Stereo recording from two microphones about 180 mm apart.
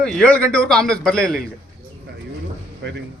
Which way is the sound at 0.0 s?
5° left (ahead or behind).